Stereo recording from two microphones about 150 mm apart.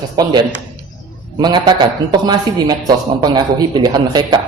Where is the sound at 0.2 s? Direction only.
30° right (ahead or behind).